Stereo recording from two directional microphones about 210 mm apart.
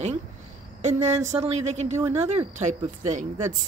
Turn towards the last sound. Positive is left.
turn(degrees=-35)  # may be behind; listen again after turning